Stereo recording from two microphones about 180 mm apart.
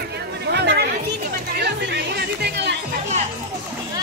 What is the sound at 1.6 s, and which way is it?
Music, 70° right (ahead or behind).